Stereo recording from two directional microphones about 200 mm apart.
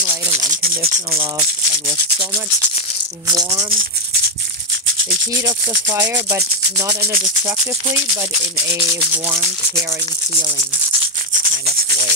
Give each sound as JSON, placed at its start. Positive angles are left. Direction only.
{"t": 0.3, "sound": "rub", "side_deg": -40}
{"t": 5.3, "sound": "speech", "side_deg": -15}
{"t": 8.2, "sound": "speech", "side_deg": -10}